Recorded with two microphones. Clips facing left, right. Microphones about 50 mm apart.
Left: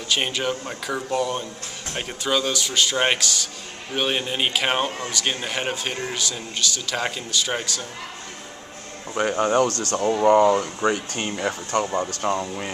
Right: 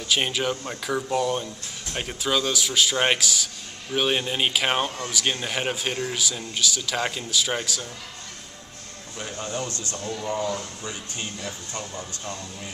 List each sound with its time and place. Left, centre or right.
0.1 s a man's voice: centre
9.4 s speech: left
10.0 s speech: left